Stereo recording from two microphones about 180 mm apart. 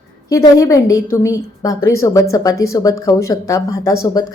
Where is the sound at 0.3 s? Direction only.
15° left (ahead or behind).